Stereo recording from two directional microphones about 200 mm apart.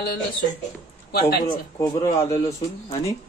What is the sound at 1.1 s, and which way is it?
Speech, 55° left (ahead or behind).